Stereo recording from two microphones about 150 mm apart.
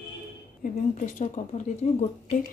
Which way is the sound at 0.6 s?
60° left (ahead or behind).